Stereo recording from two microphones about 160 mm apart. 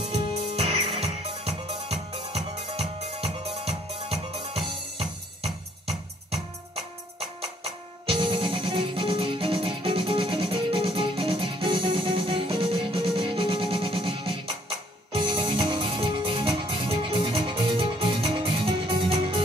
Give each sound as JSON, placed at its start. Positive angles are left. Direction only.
{"t": 0.2, "sound": "music", "side_deg": -40}